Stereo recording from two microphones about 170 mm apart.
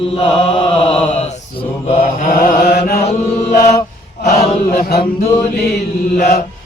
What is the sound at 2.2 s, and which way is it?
Chant, 60° left (ahead or behind).